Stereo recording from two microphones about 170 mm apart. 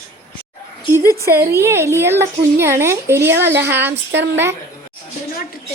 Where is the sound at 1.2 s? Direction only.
15° right (ahead or behind).